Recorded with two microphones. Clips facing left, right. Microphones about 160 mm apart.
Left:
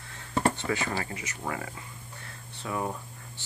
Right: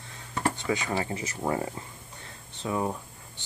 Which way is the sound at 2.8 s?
10° right (ahead or behind).